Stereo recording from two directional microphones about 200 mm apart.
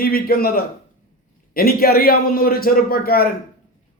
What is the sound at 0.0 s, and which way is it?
A man's voice, 50° left (ahead or behind).